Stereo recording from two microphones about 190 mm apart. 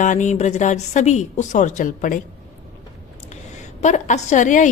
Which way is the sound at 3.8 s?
40° left (ahead or behind).